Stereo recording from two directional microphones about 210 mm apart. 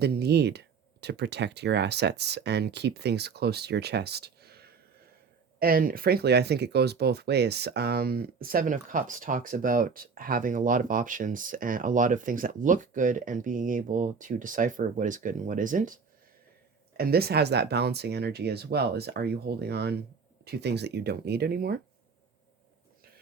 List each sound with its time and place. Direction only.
0.0 s speech: 50° right (ahead or behind)
17.0 s speech: 45° right (ahead or behind)